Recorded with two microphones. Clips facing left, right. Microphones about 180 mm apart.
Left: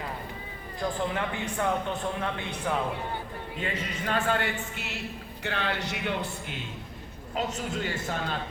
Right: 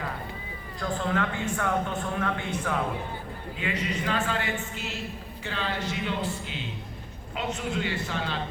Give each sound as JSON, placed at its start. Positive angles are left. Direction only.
{"t": 0.8, "sound": "speech", "side_deg": 20}
{"t": 3.6, "sound": "speech", "side_deg": 50}
{"t": 7.3, "sound": "a man's voice", "side_deg": 40}